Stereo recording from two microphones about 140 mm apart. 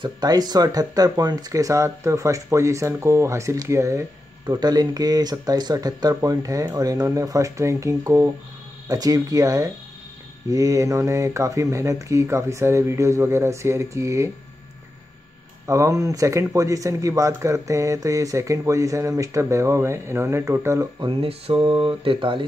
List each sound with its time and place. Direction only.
0.0 s speech: 30° right (ahead or behind)
15.6 s speech: 20° right (ahead or behind)
21.1 s speech: 45° right (ahead or behind)